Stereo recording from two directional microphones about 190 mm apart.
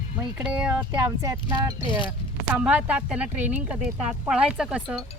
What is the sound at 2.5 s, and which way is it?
Speech, 5° right (ahead or behind).